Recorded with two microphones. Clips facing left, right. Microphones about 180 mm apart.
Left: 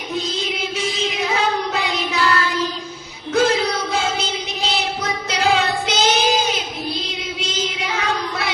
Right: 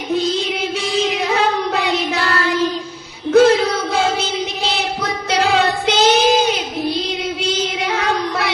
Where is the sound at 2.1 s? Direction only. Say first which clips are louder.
Right 1 dB; 65° right (ahead or behind).